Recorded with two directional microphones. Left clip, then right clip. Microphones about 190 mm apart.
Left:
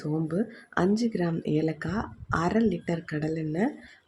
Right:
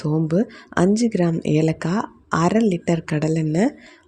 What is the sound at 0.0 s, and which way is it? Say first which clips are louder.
Speech: right 8 dB; 35° right (ahead or behind).